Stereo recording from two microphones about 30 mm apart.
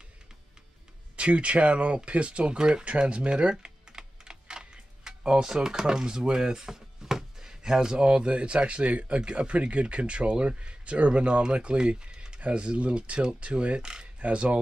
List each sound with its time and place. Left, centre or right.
1.1 s speech: right
2.5 s speech: right
3.9 s computer keyboard: right
6.7 s speech: centre; by 9.2 s right
9.2 s speech: right
12.4 s speech: right